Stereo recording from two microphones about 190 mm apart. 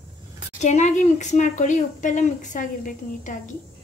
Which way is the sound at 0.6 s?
40° left (ahead or behind).